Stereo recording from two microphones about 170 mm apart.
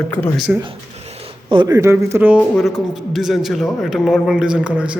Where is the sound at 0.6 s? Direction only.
35° right (ahead or behind).